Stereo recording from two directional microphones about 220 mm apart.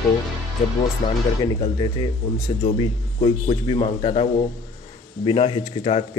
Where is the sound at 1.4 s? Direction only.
20° left (ahead or behind).